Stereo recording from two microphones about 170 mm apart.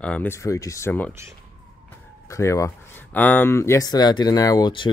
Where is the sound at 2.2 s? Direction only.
20° left (ahead or behind).